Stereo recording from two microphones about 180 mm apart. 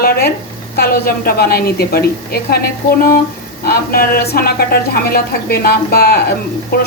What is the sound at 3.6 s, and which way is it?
A woman's voice, 55° left (ahead or behind).